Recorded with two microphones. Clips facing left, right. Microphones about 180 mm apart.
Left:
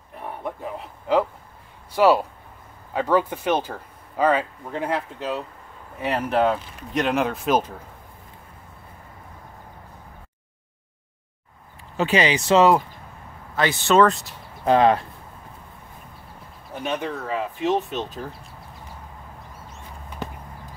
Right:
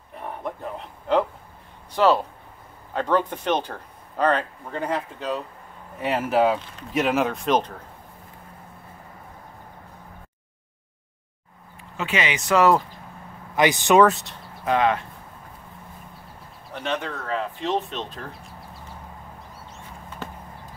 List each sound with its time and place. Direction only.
0.2 s a sound: 5° left (ahead or behind)
2.0 s speech: 10° left (ahead or behind)
12.0 s speech: 35° left (ahead or behind)
13.6 s speech: 15° right (ahead or behind)
14.0 s speech: centre (ahead or behind)
14.6 s speech: 35° left (ahead or behind)
16.7 s speech: 10° left (ahead or behind)